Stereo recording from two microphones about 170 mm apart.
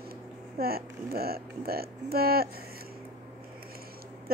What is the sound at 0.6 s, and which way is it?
Speech, 65° right (ahead or behind).